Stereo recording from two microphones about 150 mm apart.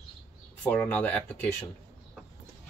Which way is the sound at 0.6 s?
10° left (ahead or behind).